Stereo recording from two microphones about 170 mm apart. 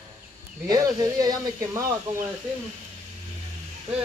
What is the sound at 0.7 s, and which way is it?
Speech, 20° right (ahead or behind).